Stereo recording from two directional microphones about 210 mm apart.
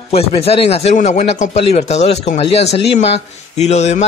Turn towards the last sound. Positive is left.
turn(degrees=30)  # may be behind; listen again after turning